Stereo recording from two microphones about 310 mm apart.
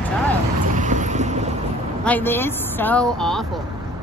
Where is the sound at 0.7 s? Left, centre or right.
Right.